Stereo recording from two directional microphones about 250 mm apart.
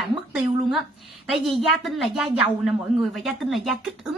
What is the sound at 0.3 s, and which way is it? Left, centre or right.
A woman's voice, centre.